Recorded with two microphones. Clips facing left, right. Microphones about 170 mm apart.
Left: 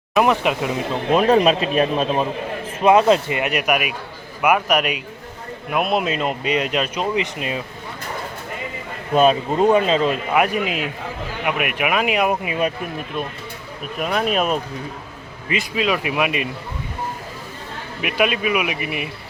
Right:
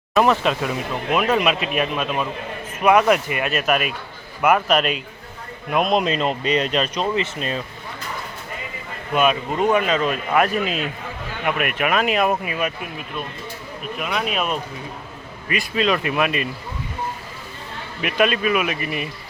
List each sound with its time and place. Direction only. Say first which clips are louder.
0.1 s speech: even; 15° left (ahead or behind)
1.1 s a man's voice: left 5 dB; 35° left (ahead or behind); by 7.6 s 15° left (ahead or behind)
9.1 s a man's voice: left 4 dB; 35° left (ahead or behind)
10.3 s speech: right 3 dB; 15° left (ahead or behind)
14.0 s a man's voice: left 4 dB; 40° left (ahead or behind)
15.7 s speech: right 1 dB; 10° left (ahead or behind)
18.0 s speech: right 1 dB; 10° left (ahead or behind)